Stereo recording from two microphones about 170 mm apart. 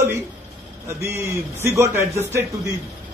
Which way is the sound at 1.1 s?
15° right (ahead or behind).